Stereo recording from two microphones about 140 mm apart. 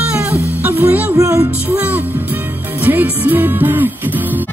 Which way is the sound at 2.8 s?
10° right (ahead or behind).